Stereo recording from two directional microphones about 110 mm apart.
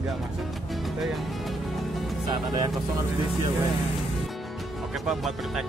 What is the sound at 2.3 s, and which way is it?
Speech, 40° right (ahead or behind).